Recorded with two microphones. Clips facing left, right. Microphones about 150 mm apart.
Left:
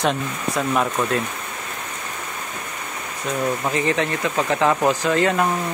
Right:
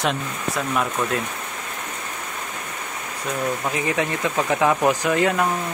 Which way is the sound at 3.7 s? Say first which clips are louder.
Left 2 dB; 10° right (ahead or behind).